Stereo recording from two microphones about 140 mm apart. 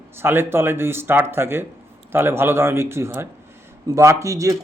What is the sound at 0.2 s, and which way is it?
Speech, 15° right (ahead or behind).